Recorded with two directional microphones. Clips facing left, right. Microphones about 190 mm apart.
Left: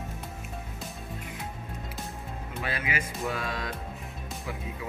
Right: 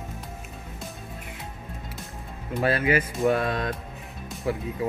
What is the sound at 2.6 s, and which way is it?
Speech, 50° right (ahead or behind).